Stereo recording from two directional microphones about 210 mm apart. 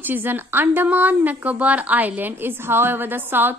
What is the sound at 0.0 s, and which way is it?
A woman's voice, 10° right (ahead or behind).